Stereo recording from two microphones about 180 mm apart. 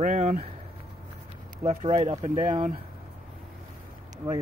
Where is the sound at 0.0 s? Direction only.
45° right (ahead or behind).